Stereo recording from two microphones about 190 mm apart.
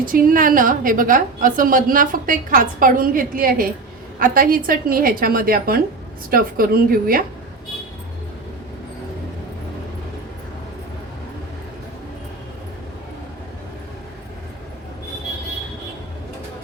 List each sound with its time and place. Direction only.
0.0 s a woman's voice: 45° right (ahead or behind)